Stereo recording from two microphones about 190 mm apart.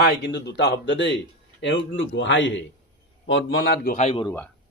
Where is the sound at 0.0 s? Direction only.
65° left (ahead or behind).